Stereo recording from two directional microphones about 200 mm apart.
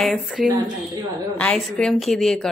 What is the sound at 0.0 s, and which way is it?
A woman's voice, centre (ahead or behind).